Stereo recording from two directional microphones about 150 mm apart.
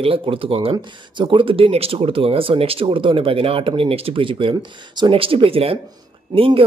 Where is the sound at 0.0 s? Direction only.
35° right (ahead or behind).